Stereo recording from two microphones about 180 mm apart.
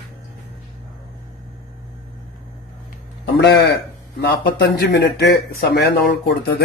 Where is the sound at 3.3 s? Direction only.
70° left (ahead or behind).